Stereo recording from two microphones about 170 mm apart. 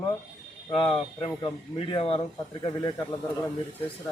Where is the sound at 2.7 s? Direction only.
20° left (ahead or behind).